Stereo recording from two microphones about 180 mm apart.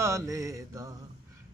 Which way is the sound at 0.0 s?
15° right (ahead or behind).